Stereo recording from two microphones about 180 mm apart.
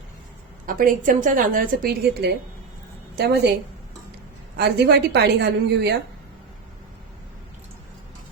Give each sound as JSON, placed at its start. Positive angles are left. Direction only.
{"t": 0.6, "sound": "a woman's voice", "side_deg": -50}
{"t": 3.2, "sound": "a woman's voice", "side_deg": -65}
{"t": 4.5, "sound": "a woman's voice", "side_deg": -65}